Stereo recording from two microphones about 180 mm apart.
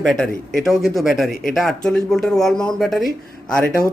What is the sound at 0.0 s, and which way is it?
Speech, 5° left (ahead or behind).